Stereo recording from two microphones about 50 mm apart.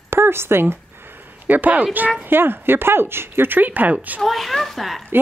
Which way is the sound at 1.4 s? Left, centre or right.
Right.